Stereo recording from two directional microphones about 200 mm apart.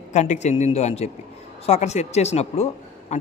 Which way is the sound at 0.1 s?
35° left (ahead or behind).